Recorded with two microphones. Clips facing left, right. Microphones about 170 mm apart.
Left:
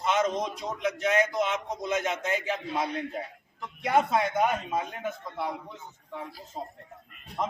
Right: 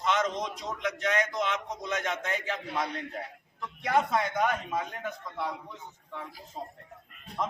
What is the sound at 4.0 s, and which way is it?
Speech, 25° left (ahead or behind).